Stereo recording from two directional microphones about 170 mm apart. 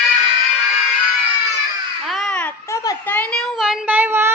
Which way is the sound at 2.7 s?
20° left (ahead or behind).